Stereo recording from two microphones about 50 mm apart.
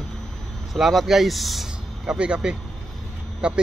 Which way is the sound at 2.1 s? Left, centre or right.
Centre.